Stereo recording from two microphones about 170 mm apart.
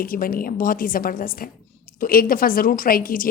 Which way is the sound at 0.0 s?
55° left (ahead or behind).